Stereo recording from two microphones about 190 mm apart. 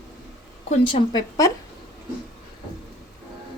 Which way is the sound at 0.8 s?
25° left (ahead or behind).